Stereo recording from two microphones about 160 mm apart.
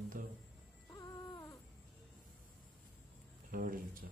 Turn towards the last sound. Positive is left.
turn(degrees=-60)  # may be behind; listen again after turning